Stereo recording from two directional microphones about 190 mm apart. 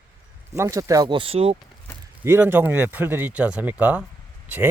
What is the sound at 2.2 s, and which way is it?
Speech, 10° right (ahead or behind).